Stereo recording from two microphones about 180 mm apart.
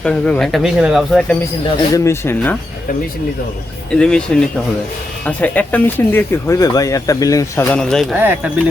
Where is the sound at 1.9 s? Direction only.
15° left (ahead or behind).